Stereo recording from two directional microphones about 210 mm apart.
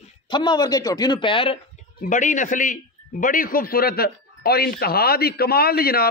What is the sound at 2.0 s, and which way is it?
Speech, 35° left (ahead or behind).